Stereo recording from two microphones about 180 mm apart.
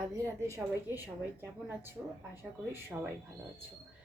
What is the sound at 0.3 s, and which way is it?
A woman's voice, 15° right (ahead or behind).